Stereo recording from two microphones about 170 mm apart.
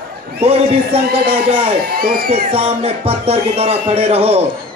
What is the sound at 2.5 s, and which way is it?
Speech, 35° right (ahead or behind).